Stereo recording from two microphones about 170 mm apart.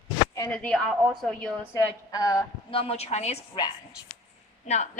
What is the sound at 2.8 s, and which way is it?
Speech, 35° left (ahead or behind).